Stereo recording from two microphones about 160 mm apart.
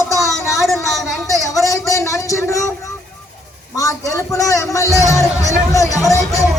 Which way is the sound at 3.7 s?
20° left (ahead or behind).